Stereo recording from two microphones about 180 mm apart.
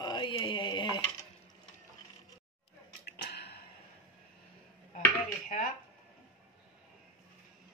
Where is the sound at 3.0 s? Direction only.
65° left (ahead or behind).